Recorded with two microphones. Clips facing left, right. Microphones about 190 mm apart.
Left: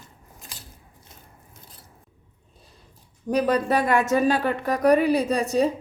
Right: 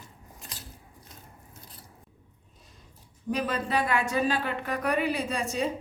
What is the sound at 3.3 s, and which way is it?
A woman's voice, 40° left (ahead or behind).